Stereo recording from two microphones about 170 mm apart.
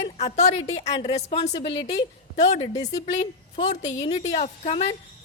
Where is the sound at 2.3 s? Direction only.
40° left (ahead or behind).